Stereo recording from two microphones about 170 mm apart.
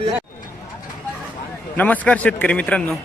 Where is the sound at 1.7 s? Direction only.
10° left (ahead or behind).